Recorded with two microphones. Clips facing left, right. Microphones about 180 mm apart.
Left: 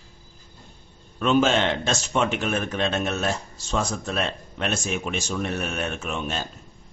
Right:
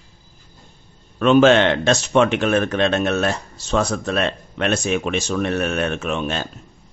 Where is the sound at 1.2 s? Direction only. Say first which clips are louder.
Right 7 dB; 70° right (ahead or behind).